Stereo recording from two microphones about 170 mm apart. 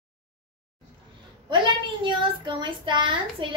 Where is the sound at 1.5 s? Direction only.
30° right (ahead or behind).